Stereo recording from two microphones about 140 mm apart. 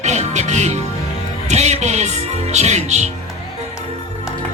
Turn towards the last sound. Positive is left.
turn(degrees=-55)  # may be behind; listen again after turning